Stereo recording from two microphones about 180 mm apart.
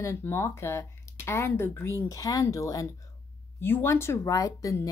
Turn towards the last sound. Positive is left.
turn(degrees=20)  # may be behind; listen again after turning